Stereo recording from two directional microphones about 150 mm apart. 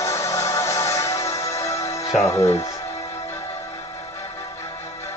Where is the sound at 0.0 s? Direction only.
20° left (ahead or behind).